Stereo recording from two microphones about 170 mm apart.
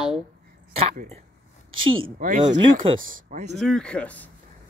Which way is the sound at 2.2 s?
55° right (ahead or behind).